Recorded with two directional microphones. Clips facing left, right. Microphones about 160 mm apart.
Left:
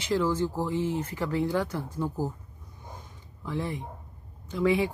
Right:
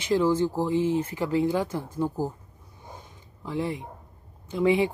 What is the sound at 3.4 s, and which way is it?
Speech, 15° right (ahead or behind).